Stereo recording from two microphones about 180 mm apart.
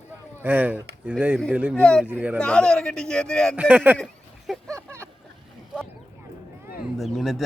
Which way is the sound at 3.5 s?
5° right (ahead or behind).